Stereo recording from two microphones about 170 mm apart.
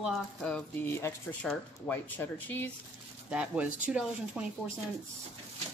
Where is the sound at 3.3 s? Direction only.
5° right (ahead or behind).